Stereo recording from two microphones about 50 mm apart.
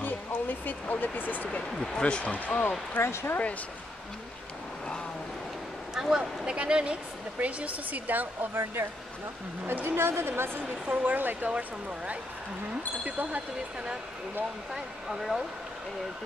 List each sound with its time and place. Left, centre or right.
0.0 s speech: left
1.8 s speech: centre
2.3 s speech: left
3.0 s speech: left
5.9 s speech: centre
6.5 s a woman's voice: right
10.9 s speech: right
13.0 s speech: right
14.7 s speech: centre